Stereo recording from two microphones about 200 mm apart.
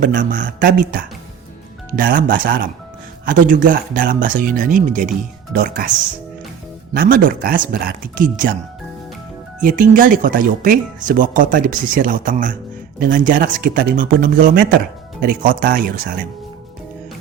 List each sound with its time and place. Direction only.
0.0 s speech: 40° right (ahead or behind)
2.0 s speech: 45° right (ahead or behind)
6.9 s speech: 45° right (ahead or behind)
9.6 s speech: 40° right (ahead or behind)